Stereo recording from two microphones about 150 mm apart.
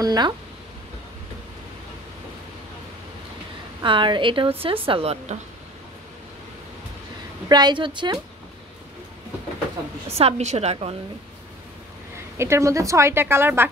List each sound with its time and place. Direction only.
0.0 s a sound: 25° right (ahead or behind)
3.8 s a woman's voice: 35° right (ahead or behind)
7.4 s a woman's voice: 30° right (ahead or behind)
10.1 s a woman's voice: 45° right (ahead or behind)
12.4 s a woman's voice: 20° right (ahead or behind)